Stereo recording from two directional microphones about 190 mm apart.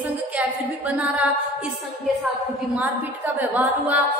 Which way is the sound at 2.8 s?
10° right (ahead or behind).